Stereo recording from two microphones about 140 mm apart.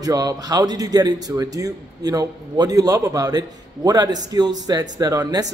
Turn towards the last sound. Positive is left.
turn(degrees=-25)  # may be behind; listen again after turning